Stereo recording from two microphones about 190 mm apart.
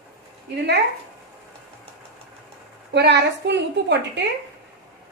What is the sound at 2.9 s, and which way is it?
A woman's voice, 65° right (ahead or behind).